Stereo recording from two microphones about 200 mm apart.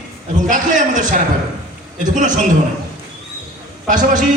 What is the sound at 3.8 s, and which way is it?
Speech, 40° right (ahead or behind).